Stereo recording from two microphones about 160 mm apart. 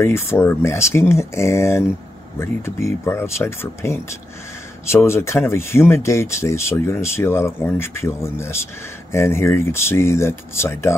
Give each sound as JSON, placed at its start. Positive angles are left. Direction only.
{"t": 0.0, "sound": "speech", "side_deg": 15}